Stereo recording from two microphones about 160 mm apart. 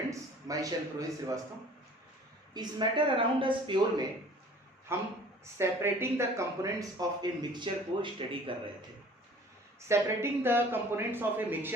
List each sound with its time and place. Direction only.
0.1 s a man's voice: 20° right (ahead or behind)
2.5 s speech: 25° right (ahead or behind)
4.9 s a man's voice: 15° right (ahead or behind); by 8.7 s 35° right (ahead or behind)
9.9 s speech: 15° right (ahead or behind)